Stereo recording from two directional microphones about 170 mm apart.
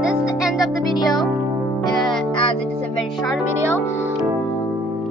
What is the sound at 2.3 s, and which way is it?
Music, 30° left (ahead or behind).